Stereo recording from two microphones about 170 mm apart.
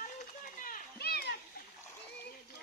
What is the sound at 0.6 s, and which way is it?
Children playing, 60° left (ahead or behind).